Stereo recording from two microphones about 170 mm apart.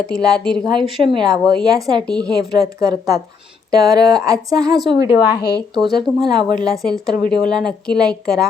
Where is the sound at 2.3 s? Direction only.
20° right (ahead or behind).